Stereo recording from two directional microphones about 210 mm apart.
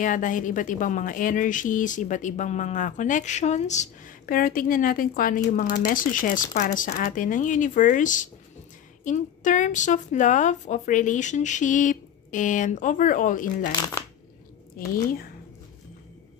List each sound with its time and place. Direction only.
0.0 s a woman's voice: 40° left (ahead or behind)